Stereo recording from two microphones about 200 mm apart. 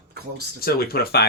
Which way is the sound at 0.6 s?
50° left (ahead or behind).